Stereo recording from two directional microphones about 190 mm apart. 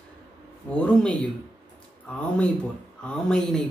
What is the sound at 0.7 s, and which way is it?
Speech, 5° left (ahead or behind).